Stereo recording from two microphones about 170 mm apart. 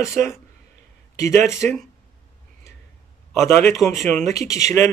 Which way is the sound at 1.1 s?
15° left (ahead or behind).